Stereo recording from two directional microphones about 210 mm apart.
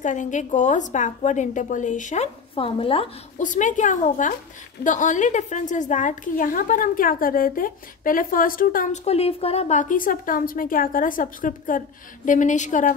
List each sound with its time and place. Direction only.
0.0 s a woman's voice: 35° left (ahead or behind)